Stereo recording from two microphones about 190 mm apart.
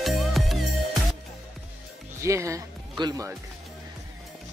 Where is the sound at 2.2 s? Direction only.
15° right (ahead or behind).